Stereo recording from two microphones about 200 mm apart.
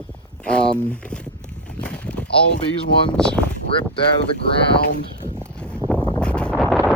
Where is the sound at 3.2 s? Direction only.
5° left (ahead or behind).